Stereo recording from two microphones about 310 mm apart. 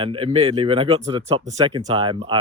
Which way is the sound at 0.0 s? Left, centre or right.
Centre.